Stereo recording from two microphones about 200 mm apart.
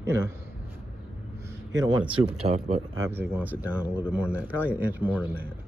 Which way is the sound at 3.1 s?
10° right (ahead or behind).